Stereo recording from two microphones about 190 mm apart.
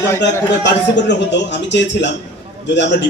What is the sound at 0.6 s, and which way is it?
A man's voice, 70° left (ahead or behind).